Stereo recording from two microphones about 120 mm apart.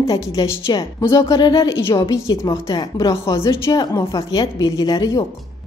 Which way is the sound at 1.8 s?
25° left (ahead or behind).